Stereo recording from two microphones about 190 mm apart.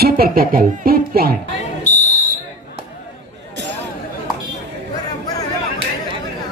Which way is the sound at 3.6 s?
65° right (ahead or behind).